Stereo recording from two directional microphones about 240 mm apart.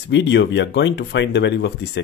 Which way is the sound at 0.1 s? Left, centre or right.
Left.